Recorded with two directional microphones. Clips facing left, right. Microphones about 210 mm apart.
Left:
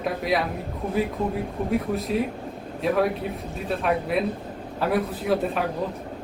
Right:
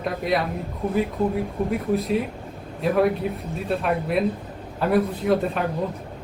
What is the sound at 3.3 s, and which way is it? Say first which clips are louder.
A man's voice: right 3 dB; centre (ahead or behind).